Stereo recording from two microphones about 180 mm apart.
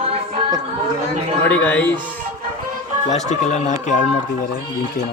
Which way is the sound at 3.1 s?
40° left (ahead or behind).